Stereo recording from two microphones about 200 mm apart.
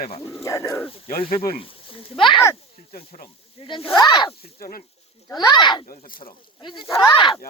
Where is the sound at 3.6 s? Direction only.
25° left (ahead or behind).